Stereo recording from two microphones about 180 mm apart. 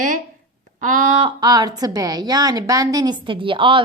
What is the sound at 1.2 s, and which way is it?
A woman's voice, 25° right (ahead or behind).